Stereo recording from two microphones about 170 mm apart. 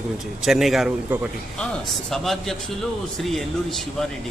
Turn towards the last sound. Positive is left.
turn(degrees=0)  # may be behind; listen again after turning